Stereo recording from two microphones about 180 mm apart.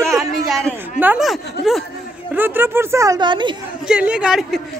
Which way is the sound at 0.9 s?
5° right (ahead or behind).